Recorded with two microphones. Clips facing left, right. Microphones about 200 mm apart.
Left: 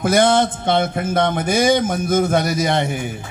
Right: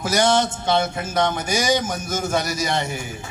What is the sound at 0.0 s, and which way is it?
A man's voice, 55° left (ahead or behind).